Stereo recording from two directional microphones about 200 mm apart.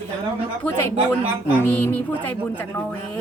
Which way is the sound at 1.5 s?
10° left (ahead or behind).